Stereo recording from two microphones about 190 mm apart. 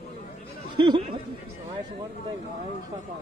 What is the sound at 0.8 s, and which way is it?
Chatter, 25° right (ahead or behind).